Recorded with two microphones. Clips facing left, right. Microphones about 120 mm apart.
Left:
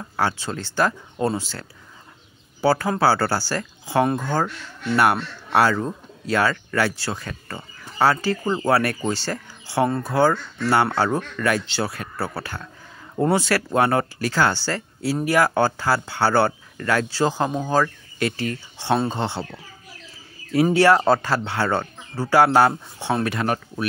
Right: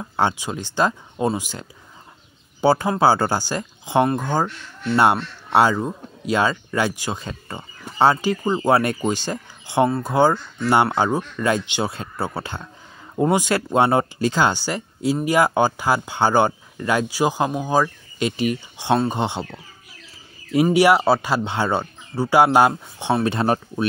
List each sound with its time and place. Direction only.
0.0 s speech: 20° right (ahead or behind)
5.5 s speech: 20° right (ahead or behind)
20.7 s speech: 15° right (ahead or behind)
23.2 s speech: 30° right (ahead or behind)